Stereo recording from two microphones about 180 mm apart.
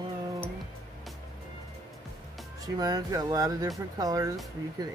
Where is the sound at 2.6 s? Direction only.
20° right (ahead or behind).